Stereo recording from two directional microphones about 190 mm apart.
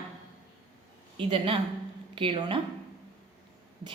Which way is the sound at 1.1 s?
30° right (ahead or behind).